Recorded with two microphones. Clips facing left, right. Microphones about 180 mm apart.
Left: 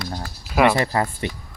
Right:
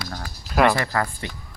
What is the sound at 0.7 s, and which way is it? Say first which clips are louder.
Speech: left 3 dB; 20° left (ahead or behind).